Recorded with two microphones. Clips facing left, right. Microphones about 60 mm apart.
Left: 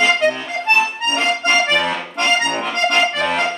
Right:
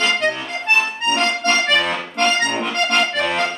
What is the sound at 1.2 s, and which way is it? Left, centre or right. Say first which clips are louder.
Accordion: left 3 dB; centre.